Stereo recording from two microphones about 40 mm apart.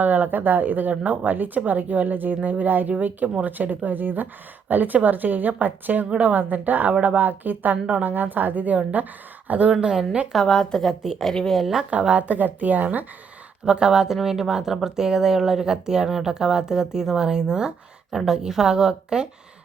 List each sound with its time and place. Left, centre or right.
0.0 s a woman's voice: right
9.8 s speech: centre
10.4 s a woman's voice: centre
11.9 s a woman's voice: right
13.7 s speech: centre